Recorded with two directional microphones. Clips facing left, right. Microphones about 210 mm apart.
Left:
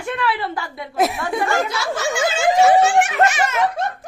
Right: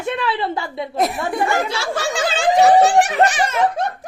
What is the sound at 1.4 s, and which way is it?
Speech, 20° right (ahead or behind).